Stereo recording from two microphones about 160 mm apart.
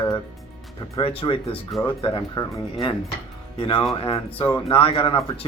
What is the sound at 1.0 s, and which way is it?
Speech, 35° left (ahead or behind).